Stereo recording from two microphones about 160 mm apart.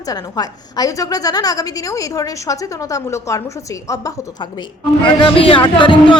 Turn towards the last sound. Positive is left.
turn(degrees=30)  # may be behind; listen again after turning